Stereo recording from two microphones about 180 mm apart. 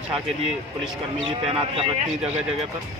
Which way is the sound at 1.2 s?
30° right (ahead or behind).